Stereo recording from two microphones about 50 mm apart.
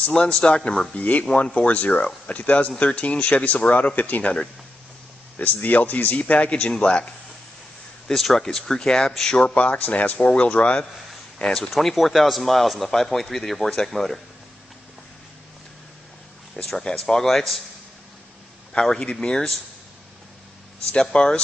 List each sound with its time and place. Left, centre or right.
0.1 s speech: centre
0.9 s speech: left
3.7 s speech: left
5.4 s speech: left
6.3 s speech: left
8.1 s speech: centre
9.5 s speech: left
10.1 s speech: left
11.3 s speech: centre
11.7 s speech: centre
16.5 s speech: centre
18.7 s speech: centre
21.1 s speech: centre